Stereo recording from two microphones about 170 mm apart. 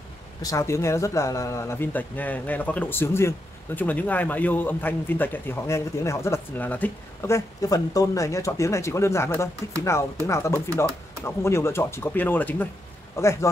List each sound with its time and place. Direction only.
0.4 s speech: 20° left (ahead or behind)